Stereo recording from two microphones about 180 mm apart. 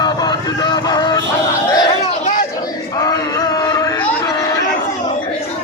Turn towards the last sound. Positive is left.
turn(degrees=15)  # may be behind; listen again after turning